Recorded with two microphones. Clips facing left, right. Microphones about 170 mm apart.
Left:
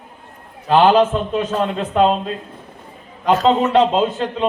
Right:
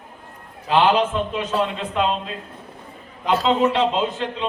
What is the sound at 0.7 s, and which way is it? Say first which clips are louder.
A man's voice: left 5 dB; 45° left (ahead or behind).